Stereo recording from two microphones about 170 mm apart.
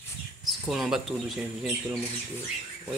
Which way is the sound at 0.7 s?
Centre (ahead or behind).